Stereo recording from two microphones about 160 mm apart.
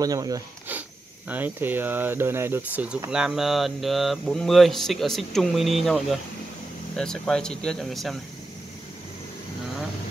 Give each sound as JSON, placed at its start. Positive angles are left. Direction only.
{"t": 0.0, "sound": "speech", "side_deg": -25}
{"t": 1.3, "sound": "speech", "side_deg": -10}